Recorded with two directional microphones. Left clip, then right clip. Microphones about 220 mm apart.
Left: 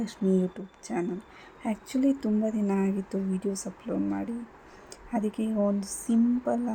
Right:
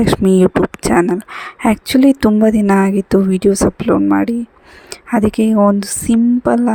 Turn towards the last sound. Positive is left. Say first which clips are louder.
# right 14 dB
turn(degrees=-45)  # may be behind; listen again after turning